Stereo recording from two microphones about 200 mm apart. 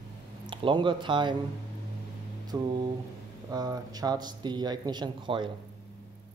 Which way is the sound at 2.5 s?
20° right (ahead or behind).